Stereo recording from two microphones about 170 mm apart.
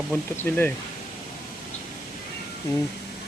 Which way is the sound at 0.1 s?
10° left (ahead or behind).